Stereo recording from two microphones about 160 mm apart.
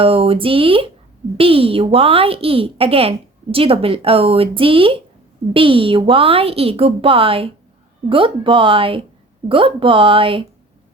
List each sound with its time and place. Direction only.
0.0 s a woman's voice: 35° right (ahead or behind)